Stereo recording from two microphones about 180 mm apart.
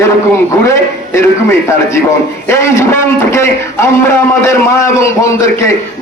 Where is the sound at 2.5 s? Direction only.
15° left (ahead or behind).